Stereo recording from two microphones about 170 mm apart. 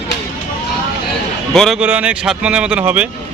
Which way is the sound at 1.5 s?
Centre (ahead or behind).